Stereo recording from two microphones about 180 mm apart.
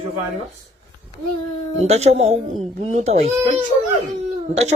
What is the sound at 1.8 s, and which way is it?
A woman's voice, 35° right (ahead or behind).